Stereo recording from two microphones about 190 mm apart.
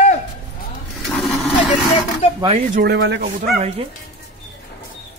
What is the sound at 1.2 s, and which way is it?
Vehicle, centre (ahead or behind).